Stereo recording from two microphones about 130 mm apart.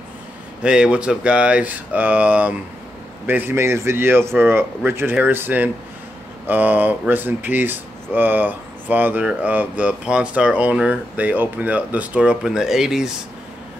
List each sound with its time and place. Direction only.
0.6 s speech: 5° right (ahead or behind)